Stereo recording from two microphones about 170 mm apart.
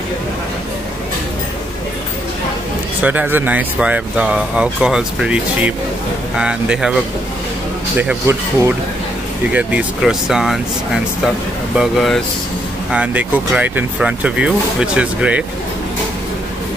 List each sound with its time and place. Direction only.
3.0 s speech: 10° right (ahead or behind)
8.0 s speech: 15° right (ahead or behind)